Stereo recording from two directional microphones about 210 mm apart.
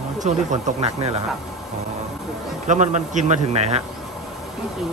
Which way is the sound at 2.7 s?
35° right (ahead or behind).